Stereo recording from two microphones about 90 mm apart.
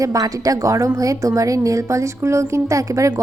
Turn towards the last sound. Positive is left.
turn(degrees=-35)  # may be behind; listen again after turning